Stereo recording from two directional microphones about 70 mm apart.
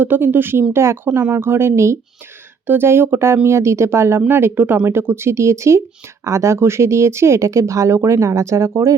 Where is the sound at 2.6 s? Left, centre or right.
Right.